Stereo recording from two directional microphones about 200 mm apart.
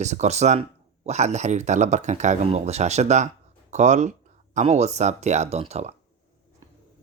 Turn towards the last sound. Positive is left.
turn(degrees=-35)  # may be behind; listen again after turning